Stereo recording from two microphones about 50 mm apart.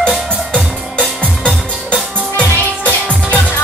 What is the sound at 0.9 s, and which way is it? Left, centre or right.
Music, centre.